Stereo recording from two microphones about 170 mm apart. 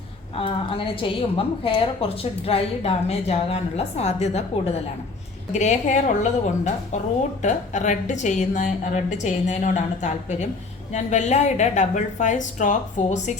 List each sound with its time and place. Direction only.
0.3 s a woman's voice: 30° left (ahead or behind)
5.5 s a woman's voice: 45° left (ahead or behind)